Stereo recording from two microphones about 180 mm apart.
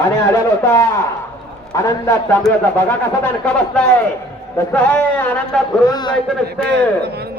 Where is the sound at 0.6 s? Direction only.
15° left (ahead or behind).